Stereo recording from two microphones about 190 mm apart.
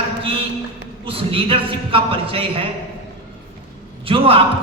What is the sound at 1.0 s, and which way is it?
A man's voice, 30° right (ahead or behind).